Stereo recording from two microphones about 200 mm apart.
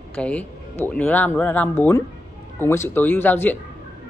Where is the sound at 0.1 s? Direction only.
5° left (ahead or behind).